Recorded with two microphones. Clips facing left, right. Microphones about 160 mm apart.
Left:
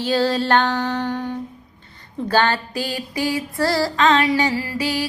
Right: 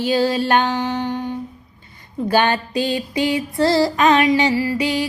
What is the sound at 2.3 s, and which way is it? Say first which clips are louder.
Female singing: right 1 dB; 15° right (ahead or behind).